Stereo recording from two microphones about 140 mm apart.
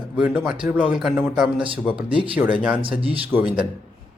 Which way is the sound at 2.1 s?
40° right (ahead or behind).